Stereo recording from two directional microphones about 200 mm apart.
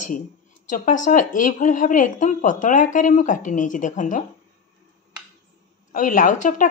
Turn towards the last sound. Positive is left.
turn(degrees=40)  # may be behind; listen again after turning